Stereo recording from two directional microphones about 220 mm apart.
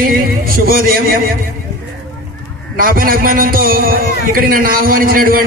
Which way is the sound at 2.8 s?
40° right (ahead or behind).